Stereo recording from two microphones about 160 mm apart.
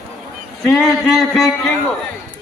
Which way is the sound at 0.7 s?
Centre (ahead or behind).